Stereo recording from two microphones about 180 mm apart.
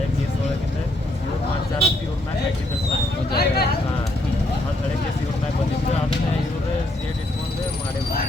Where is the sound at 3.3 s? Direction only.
60° left (ahead or behind).